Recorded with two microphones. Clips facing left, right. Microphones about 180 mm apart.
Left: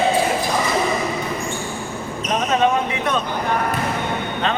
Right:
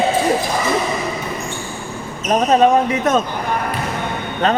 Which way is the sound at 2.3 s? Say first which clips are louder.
Right 6 dB; 40° right (ahead or behind).